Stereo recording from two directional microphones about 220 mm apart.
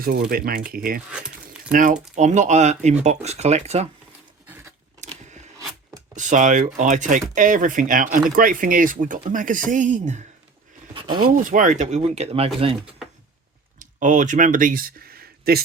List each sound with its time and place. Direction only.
0.0 s speech: 40° right (ahead or behind)
1.1 s a sound: 5° right (ahead or behind)
1.7 s speech: 35° right (ahead or behind)
6.1 s speech: 35° right (ahead or behind)
13.7 s speech: 35° right (ahead or behind)